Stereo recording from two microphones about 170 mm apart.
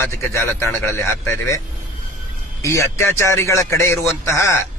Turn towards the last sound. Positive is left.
turn(degrees=15)  # may be behind; listen again after turning